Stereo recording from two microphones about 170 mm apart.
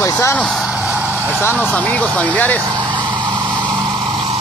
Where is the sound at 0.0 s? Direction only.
15° left (ahead or behind).